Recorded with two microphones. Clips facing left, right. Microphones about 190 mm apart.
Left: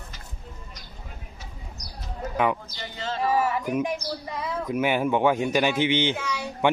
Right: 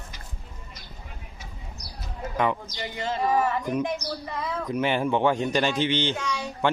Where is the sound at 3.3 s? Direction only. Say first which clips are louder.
Left 1 dB; 10° left (ahead or behind).